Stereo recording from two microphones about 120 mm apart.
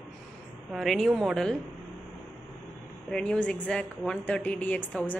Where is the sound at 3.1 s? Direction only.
10° left (ahead or behind).